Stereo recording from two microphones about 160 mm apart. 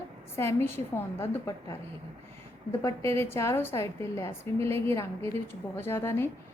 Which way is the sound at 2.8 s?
15° left (ahead or behind).